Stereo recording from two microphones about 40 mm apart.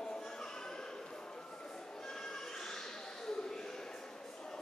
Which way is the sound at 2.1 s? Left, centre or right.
Centre.